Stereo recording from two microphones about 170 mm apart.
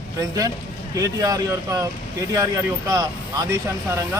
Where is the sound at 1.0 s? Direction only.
20° right (ahead or behind).